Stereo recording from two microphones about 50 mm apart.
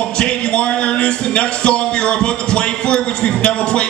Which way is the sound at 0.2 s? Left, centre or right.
Centre.